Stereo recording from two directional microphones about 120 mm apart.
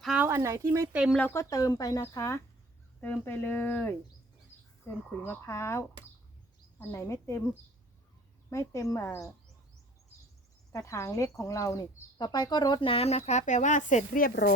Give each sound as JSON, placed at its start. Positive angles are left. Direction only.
{"t": 0.2, "sound": "speech", "side_deg": -20}
{"t": 1.1, "sound": "speech", "side_deg": 15}
{"t": 1.4, "sound": "speech", "side_deg": 30}
{"t": 5.0, "sound": "speech", "side_deg": 20}
{"t": 8.4, "sound": "speech", "side_deg": 25}
{"t": 10.7, "sound": "speech", "side_deg": 25}
{"t": 12.9, "sound": "speech", "side_deg": 55}